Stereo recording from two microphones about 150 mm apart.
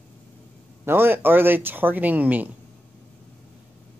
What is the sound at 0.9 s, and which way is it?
Speech, 15° right (ahead or behind).